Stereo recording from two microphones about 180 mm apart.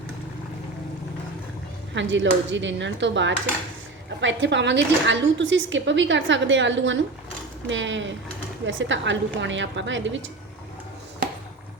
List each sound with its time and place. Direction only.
2.0 s a woman's voice: 90° right